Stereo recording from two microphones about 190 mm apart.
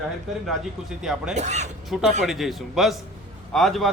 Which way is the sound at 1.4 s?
40° right (ahead or behind).